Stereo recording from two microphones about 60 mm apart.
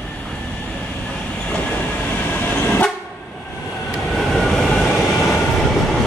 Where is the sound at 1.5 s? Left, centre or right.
Left.